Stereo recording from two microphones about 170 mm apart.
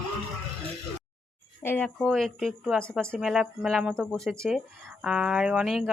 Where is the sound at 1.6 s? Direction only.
10° left (ahead or behind).